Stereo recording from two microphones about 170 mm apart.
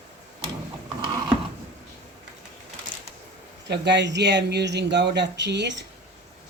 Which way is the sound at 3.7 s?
90° right.